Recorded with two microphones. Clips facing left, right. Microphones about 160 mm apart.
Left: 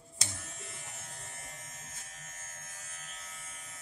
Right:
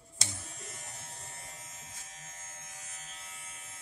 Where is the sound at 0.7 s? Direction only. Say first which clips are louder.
Even; 40° right (ahead or behind).